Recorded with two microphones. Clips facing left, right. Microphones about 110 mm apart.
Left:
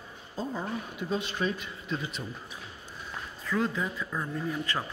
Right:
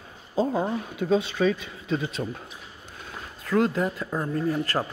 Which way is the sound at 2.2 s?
85° right.